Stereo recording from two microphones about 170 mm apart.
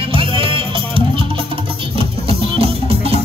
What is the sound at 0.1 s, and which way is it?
Music, 30° right (ahead or behind).